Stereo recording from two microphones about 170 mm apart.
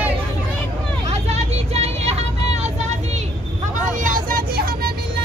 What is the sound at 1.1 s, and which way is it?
Vehicle, 40° right (ahead or behind).